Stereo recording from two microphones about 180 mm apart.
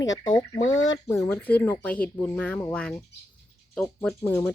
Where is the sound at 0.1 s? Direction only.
25° left (ahead or behind); by 4.1 s 5° left (ahead or behind).